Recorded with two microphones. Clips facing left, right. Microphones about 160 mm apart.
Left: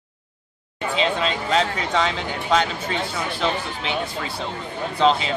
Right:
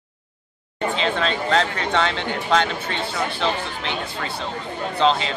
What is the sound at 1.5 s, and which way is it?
Speech, 10° left (ahead or behind).